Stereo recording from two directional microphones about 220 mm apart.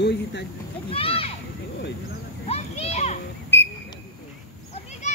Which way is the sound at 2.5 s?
30° left (ahead or behind).